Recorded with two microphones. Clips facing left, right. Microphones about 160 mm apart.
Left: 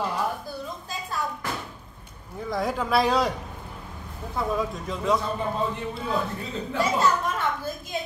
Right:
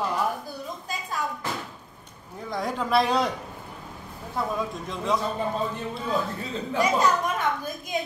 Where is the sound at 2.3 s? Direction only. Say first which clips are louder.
Left 2 dB; centre (ahead or behind).